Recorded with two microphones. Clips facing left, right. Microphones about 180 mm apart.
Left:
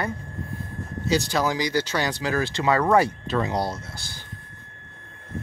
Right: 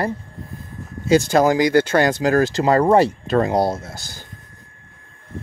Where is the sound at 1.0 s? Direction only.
50° right (ahead or behind); by 3.1 s 30° right (ahead or behind).